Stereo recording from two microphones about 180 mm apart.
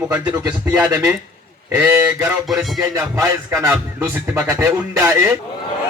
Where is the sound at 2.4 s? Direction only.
Centre (ahead or behind).